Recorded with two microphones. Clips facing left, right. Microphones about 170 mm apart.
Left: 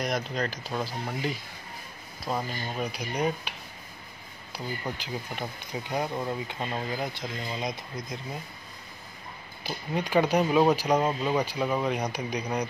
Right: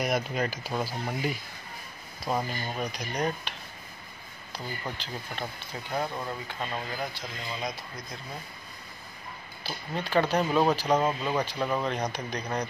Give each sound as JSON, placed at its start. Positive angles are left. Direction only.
{"t": 0.0, "sound": "speech", "side_deg": -5}
{"t": 9.6, "sound": "speech", "side_deg": 15}